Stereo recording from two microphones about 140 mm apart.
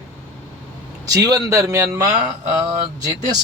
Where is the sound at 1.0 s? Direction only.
25° right (ahead or behind).